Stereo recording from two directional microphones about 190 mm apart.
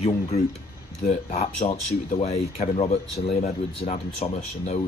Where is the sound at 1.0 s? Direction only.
35° left (ahead or behind).